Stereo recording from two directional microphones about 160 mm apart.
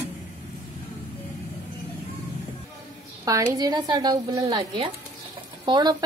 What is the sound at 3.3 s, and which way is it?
Speech, 20° right (ahead or behind).